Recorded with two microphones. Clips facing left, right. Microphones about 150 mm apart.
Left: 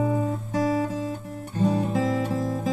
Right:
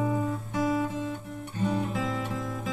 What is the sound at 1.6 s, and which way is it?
Music, 35° left (ahead or behind).